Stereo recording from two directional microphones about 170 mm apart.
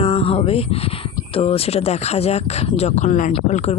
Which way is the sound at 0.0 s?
35° left (ahead or behind).